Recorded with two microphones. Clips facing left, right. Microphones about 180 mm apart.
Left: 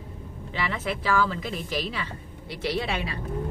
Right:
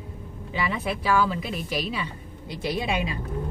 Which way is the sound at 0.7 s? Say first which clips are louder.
Right 1 dB; 10° right (ahead or behind).